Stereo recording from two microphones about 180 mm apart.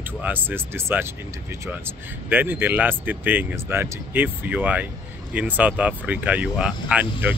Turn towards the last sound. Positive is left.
turn(degrees=-10)  # may be behind; listen again after turning